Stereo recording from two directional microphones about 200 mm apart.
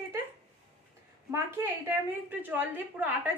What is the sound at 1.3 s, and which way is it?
A woman's voice, 10° right (ahead or behind).